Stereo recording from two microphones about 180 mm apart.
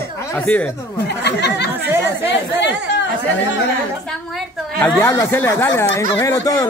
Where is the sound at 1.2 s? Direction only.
70° left (ahead or behind).